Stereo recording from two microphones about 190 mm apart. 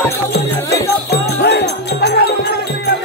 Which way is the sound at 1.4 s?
60° left (ahead or behind).